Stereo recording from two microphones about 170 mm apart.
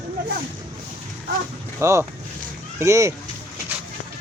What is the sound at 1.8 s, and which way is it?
Speech, 15° right (ahead or behind).